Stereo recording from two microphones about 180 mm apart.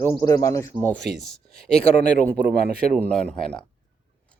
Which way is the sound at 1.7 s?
40° left (ahead or behind).